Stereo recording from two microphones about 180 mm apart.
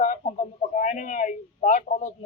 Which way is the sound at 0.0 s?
45° left (ahead or behind).